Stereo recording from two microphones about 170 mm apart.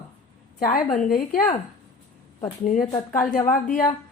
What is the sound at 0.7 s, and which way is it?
Speech, 55° left (ahead or behind).